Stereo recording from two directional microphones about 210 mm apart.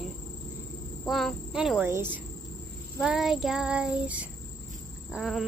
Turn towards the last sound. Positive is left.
turn(degrees=0)  # may be behind; listen again after turning